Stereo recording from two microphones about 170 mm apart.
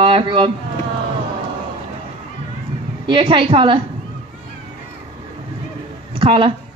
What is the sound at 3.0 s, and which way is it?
Speech, 30° right (ahead or behind).